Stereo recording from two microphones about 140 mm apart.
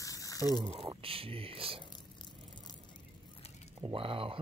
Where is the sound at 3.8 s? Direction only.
40° right (ahead or behind).